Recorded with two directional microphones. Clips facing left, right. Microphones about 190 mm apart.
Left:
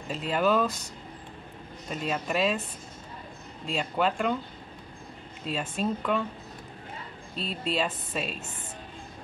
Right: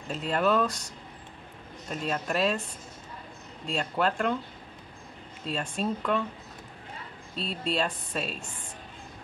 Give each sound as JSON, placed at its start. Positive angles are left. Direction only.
{"t": 0.1, "sound": "speech", "side_deg": 0}
{"t": 1.9, "sound": "speech", "side_deg": 0}
{"t": 3.6, "sound": "speech", "side_deg": 0}
{"t": 5.4, "sound": "speech", "side_deg": 0}
{"t": 7.3, "sound": "speech", "side_deg": 0}